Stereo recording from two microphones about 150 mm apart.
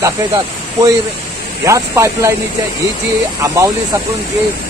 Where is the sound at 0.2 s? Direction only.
25° right (ahead or behind).